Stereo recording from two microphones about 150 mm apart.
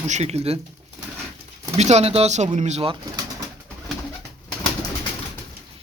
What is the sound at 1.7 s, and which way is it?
Speech, 45° right (ahead or behind).